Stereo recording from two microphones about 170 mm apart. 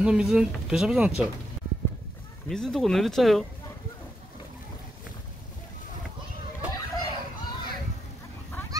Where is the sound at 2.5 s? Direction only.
Centre (ahead or behind).